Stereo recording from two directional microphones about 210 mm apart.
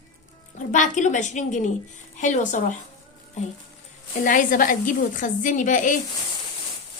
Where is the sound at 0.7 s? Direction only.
35° left (ahead or behind).